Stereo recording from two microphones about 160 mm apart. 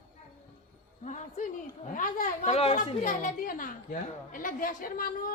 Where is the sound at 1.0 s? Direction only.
50° left (ahead or behind).